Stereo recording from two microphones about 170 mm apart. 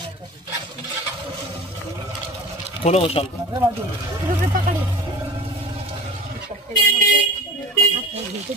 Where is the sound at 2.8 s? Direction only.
35° left (ahead or behind).